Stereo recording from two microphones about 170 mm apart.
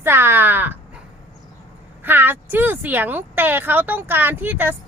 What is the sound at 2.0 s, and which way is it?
Speech, 10° right (ahead or behind).